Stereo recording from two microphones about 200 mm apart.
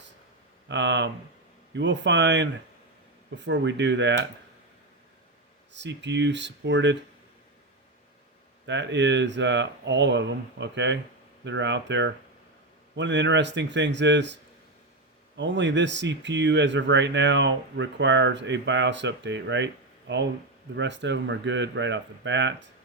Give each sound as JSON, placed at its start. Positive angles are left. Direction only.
{"t": 0.7, "sound": "speech", "side_deg": -65}
{"t": 5.7, "sound": "speech", "side_deg": -60}
{"t": 8.6, "sound": "speech", "side_deg": -65}
{"t": 15.4, "sound": "speech", "side_deg": -60}